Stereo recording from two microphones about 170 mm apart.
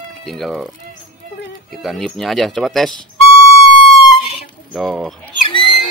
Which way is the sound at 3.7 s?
30° left (ahead or behind).